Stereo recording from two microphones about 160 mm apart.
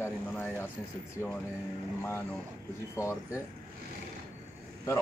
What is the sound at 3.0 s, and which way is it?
Speech, 20° left (ahead or behind).